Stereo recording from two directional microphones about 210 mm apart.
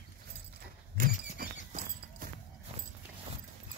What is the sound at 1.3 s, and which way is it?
Horse, 45° right (ahead or behind).